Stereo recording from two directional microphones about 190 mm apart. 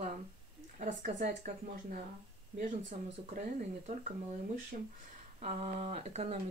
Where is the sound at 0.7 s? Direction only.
40° right (ahead or behind).